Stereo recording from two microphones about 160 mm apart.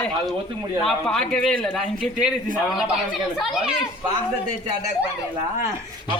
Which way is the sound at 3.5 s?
5° right (ahead or behind).